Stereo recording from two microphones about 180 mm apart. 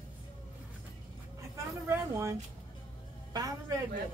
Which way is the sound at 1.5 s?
15° right (ahead or behind).